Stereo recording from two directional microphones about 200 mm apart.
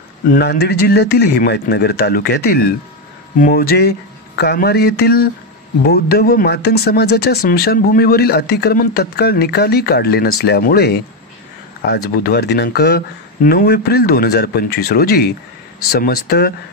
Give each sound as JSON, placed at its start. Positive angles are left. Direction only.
{"t": 0.4, "sound": "speech", "side_deg": 55}